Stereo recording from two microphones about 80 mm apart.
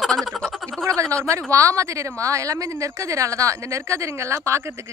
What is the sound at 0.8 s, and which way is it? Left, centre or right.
Speech, right.